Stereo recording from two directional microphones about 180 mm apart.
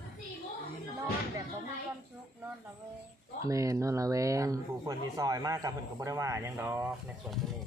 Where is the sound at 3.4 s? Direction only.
20° right (ahead or behind).